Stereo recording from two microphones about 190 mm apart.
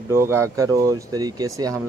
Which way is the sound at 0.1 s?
15° right (ahead or behind).